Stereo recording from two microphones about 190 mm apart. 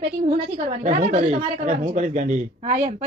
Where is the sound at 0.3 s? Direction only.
35° right (ahead or behind).